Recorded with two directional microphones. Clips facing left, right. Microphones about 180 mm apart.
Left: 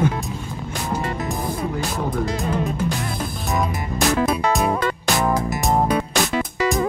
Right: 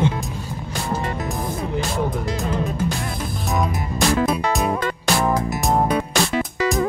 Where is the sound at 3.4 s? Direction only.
Centre (ahead or behind).